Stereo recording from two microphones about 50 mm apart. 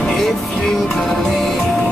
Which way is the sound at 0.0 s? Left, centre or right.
Centre.